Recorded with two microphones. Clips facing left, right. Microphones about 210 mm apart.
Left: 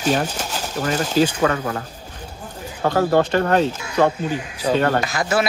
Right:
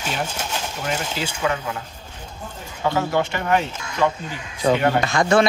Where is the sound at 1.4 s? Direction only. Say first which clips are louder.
Left 4 dB; 50° left (ahead or behind).